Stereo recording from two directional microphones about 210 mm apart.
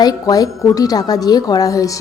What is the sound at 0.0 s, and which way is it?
A woman's voice, 20° left (ahead or behind).